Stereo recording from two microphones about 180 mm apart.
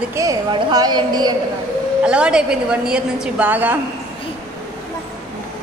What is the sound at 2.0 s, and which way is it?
A woman's voice, 5° right (ahead or behind).